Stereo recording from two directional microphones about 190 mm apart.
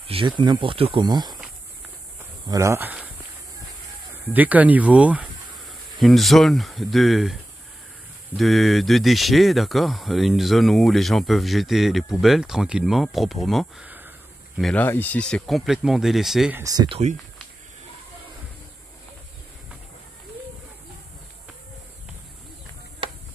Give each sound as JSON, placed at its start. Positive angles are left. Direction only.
{"t": 0.1, "sound": "speech", "side_deg": -25}
{"t": 2.4, "sound": "speech", "side_deg": -15}
{"t": 4.1, "sound": "speech", "side_deg": -10}
{"t": 14.6, "sound": "speech", "side_deg": 5}
{"t": 16.6, "sound": "speech", "side_deg": -20}